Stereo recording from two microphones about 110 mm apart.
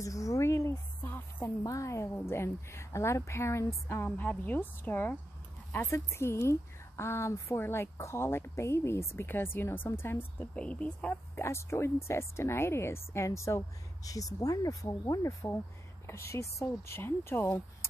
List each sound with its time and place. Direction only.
0.0 s a sound: 30° left (ahead or behind)
1.6 s a woman's voice: 30° left (ahead or behind); by 11.4 s 10° left (ahead or behind)
11.4 s a woman's voice: 25° left (ahead or behind)